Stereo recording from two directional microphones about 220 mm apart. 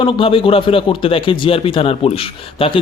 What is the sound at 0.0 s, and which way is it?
A man's voice, 25° left (ahead or behind).